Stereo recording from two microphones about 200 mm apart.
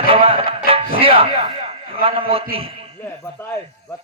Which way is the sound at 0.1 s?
30° right (ahead or behind).